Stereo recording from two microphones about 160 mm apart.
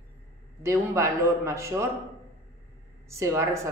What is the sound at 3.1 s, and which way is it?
Speech, 20° right (ahead or behind).